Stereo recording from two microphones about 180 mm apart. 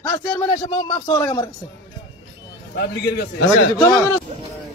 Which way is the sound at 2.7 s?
65° left (ahead or behind).